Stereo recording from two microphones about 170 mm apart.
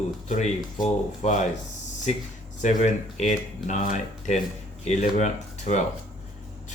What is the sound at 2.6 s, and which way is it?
Speech, 45° left (ahead or behind).